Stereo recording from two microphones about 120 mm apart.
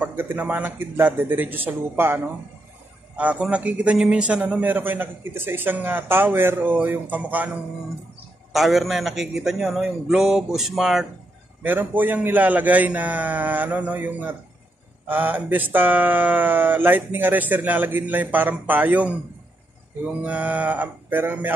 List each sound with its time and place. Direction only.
0.0 s a man's voice: 15° right (ahead or behind)
8.5 s a man's voice: centre (ahead or behind)
11.6 s a man's voice: 15° right (ahead or behind)